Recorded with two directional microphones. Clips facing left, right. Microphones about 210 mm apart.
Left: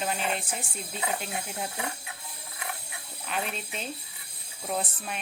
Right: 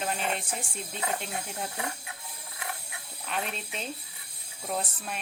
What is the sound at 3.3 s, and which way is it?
Speech, centre (ahead or behind).